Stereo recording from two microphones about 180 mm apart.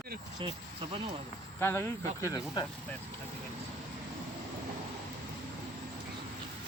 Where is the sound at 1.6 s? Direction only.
15° left (ahead or behind).